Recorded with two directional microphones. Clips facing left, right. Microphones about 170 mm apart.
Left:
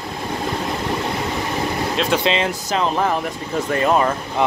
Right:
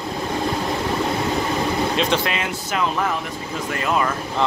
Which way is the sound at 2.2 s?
25° left (ahead or behind).